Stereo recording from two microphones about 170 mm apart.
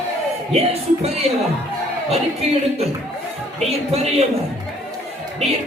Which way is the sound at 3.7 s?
35° right (ahead or behind).